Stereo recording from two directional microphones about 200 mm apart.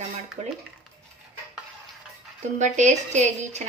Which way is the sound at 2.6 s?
35° right (ahead or behind).